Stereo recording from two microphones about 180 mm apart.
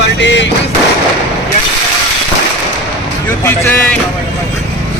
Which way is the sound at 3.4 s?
10° left (ahead or behind).